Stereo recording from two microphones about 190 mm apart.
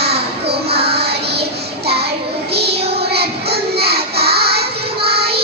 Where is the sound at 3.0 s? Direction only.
60° right (ahead or behind).